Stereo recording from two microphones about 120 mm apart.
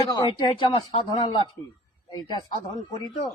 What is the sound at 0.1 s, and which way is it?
Speech, 40° left (ahead or behind).